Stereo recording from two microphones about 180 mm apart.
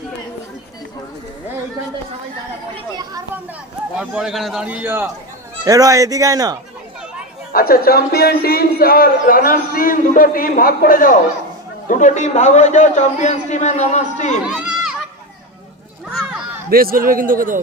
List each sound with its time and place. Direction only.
2.7 s chatter: 20° right (ahead or behind)
3.9 s a man's voice: 5° right (ahead or behind); by 6.6 s 20° right (ahead or behind)
7.5 s a man's voice: 55° left (ahead or behind)
14.4 s run: 5° right (ahead or behind)
16.1 s a sound: 5° right (ahead or behind)
16.6 s a man's voice: 55° right (ahead or behind)